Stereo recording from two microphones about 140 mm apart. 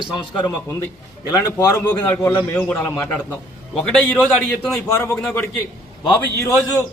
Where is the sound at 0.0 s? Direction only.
35° left (ahead or behind).